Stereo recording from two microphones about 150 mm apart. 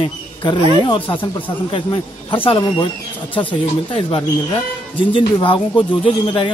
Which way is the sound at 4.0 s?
35° left (ahead or behind).